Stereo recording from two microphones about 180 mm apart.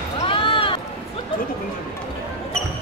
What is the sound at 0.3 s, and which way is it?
Run, 30° left (ahead or behind).